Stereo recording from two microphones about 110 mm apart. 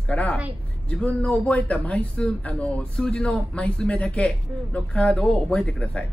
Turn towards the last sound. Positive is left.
turn(degrees=10)  # may be behind; listen again after turning